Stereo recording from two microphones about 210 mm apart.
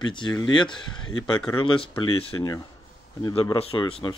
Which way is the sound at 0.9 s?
80° left.